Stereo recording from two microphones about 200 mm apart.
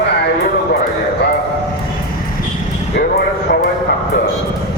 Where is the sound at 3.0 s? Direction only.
50° left (ahead or behind).